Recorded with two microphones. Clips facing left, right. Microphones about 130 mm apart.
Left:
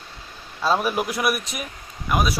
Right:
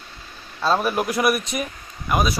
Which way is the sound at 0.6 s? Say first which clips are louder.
Right 1 dB; 10° left (ahead or behind).